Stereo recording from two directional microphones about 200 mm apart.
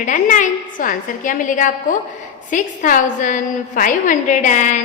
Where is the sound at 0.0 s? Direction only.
40° left (ahead or behind).